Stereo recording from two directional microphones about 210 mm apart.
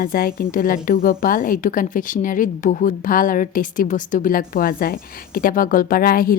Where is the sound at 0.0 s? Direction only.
45° left (ahead or behind).